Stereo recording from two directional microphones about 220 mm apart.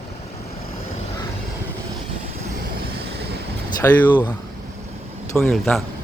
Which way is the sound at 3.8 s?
10° left (ahead or behind).